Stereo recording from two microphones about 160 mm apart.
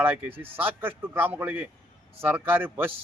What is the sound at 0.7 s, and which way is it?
A man's voice, 15° right (ahead or behind).